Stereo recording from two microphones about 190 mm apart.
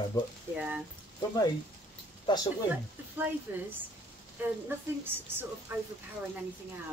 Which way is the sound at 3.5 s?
15° right (ahead or behind).